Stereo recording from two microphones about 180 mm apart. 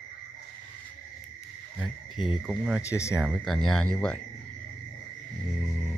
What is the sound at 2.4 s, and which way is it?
Speech, 5° right (ahead or behind).